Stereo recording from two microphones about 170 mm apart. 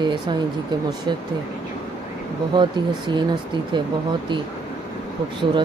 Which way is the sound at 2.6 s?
25° right (ahead or behind).